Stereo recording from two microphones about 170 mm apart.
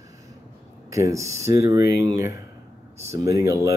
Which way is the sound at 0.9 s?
20° right (ahead or behind).